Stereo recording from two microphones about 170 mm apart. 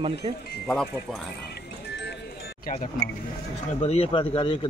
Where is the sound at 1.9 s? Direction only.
90° left.